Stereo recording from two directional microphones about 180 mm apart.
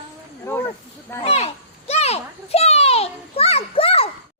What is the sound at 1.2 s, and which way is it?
A child's voice, 35° left (ahead or behind).